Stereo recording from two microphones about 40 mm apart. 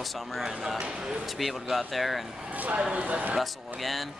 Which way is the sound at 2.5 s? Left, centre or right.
Right.